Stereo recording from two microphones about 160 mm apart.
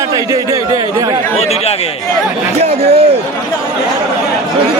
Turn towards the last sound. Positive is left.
turn(degrees=-40)  # may be behind; listen again after turning